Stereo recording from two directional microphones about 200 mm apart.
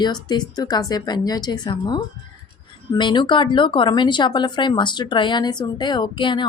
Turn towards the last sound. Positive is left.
turn(degrees=25)  # may be behind; listen again after turning